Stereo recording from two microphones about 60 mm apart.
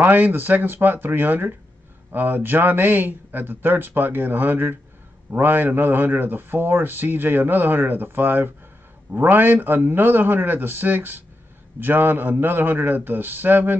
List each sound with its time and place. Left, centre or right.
0.0 s speech: right